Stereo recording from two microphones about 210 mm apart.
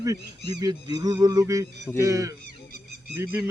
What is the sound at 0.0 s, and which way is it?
A man's voice, 15° right (ahead or behind).